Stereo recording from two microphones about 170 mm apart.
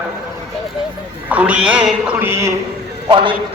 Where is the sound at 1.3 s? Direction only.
10° right (ahead or behind).